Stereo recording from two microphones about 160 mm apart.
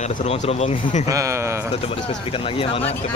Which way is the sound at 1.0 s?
20° right (ahead or behind).